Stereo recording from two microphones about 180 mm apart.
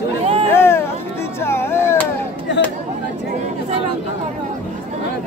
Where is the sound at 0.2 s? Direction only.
35° right (ahead or behind).